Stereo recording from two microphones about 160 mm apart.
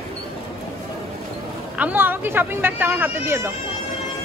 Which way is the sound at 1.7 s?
10° right (ahead or behind).